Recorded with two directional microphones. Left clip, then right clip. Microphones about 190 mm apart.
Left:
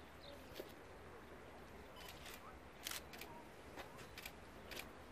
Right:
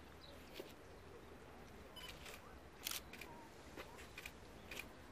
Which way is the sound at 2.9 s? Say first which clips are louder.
Right 1 dB; 45° left (ahead or behind).